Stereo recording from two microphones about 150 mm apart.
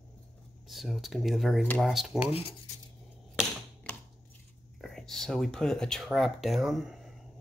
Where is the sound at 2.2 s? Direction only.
40° left (ahead or behind).